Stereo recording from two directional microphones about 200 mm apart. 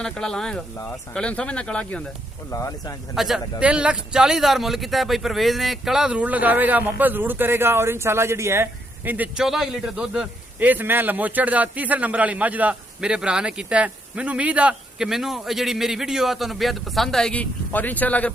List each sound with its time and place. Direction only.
0.0 s speech: 5° left (ahead or behind)
2.5 s speech: 15° left (ahead or behind)
3.2 s speech: centre (ahead or behind)